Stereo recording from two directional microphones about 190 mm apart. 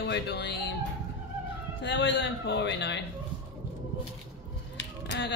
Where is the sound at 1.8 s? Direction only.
70° left (ahead or behind).